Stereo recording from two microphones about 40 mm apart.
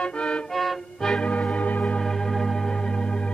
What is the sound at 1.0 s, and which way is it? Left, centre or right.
Organ, centre.